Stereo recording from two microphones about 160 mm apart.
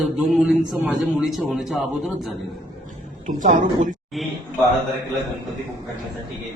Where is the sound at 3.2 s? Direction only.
50° right (ahead or behind).